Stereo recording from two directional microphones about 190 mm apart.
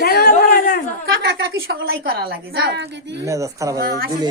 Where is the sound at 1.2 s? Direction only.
60° right (ahead or behind).